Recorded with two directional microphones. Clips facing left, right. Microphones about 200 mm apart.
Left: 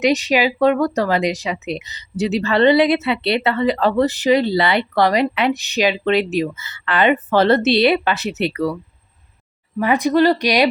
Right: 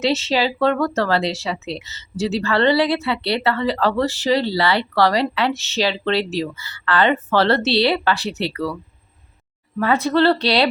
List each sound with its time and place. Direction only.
0.0 s speech: 15° left (ahead or behind)